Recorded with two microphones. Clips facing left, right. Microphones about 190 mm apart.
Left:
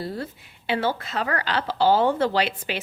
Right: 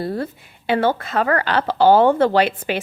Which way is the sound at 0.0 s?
55° right (ahead or behind).